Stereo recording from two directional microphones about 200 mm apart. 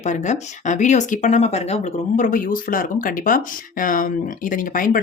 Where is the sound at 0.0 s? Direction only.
35° left (ahead or behind).